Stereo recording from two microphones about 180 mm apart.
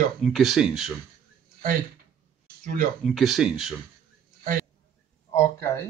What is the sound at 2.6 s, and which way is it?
Speech, 50° right (ahead or behind).